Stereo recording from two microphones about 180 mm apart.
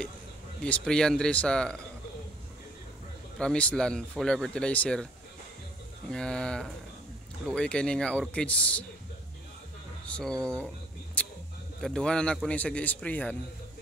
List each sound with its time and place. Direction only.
0.6 s speech: 5° left (ahead or behind)
3.3 s speech: 5° left (ahead or behind)
6.0 s speech: 5° left (ahead or behind)
10.0 s speech: 5° left (ahead or behind)
11.2 s a sound: 10° left (ahead or behind)
11.8 s a man's voice: 5° left (ahead or behind)